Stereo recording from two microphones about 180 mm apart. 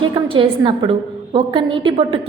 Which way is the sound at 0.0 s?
30° right (ahead or behind).